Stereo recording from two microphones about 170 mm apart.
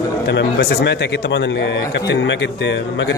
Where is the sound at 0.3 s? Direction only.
75° left (ahead or behind).